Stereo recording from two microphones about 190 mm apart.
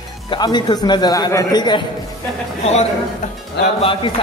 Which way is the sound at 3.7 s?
30° left (ahead or behind).